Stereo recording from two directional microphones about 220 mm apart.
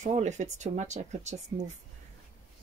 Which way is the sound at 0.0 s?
30° right (ahead or behind).